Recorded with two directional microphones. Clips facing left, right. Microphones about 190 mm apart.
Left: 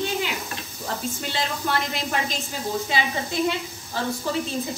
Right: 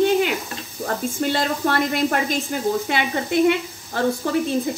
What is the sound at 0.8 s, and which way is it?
Speech, 50° right (ahead or behind).